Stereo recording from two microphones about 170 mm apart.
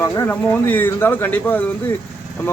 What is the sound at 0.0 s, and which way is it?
Speech, 15° left (ahead or behind).